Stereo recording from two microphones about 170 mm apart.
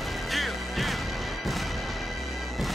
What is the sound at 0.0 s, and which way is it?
Music, centre (ahead or behind).